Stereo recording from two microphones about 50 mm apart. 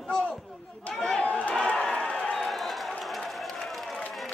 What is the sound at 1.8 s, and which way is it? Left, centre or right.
Crowd, centre.